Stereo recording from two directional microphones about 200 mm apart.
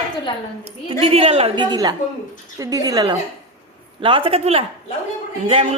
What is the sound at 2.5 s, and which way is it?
Laughter, 15° right (ahead or behind).